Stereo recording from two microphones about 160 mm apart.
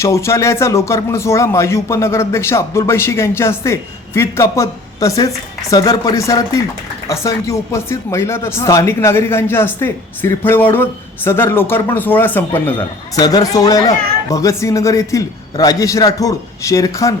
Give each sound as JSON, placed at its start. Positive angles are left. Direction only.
{"t": 0.0, "sound": "speech", "side_deg": 20}
{"t": 12.7, "sound": "speech", "side_deg": 25}